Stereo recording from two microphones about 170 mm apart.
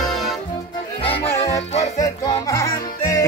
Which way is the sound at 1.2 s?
15° left (ahead or behind).